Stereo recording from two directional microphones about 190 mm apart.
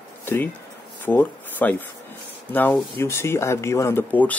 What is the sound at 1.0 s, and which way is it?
Speech, 10° left (ahead or behind).